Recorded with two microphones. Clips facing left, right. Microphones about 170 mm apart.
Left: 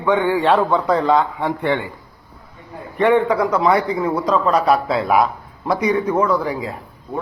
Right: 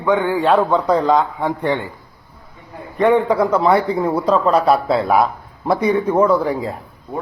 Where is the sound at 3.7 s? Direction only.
30° right (ahead or behind).